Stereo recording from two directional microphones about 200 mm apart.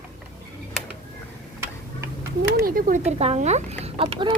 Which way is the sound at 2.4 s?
50° right (ahead or behind).